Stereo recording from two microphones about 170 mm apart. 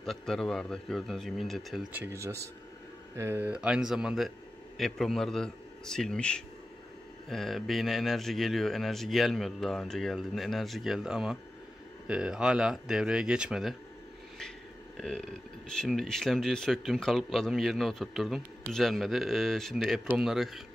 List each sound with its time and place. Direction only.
0.0 s speech: centre (ahead or behind)
1.9 s speech: 10° right (ahead or behind)
15.0 s speech: centre (ahead or behind)